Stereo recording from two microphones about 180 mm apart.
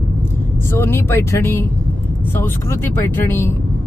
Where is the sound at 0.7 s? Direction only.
15° left (ahead or behind).